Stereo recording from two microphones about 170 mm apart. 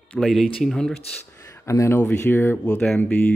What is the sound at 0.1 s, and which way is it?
Speech, centre (ahead or behind).